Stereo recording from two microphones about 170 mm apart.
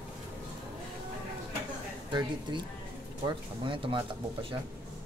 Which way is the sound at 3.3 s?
30° right (ahead or behind).